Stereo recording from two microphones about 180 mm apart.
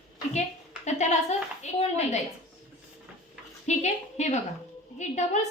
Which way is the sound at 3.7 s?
40° left (ahead or behind).